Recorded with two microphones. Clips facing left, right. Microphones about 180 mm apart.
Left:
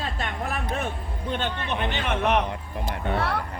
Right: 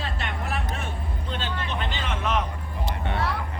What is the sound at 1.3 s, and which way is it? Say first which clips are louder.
Speech: left 4 dB; 60° left (ahead or behind).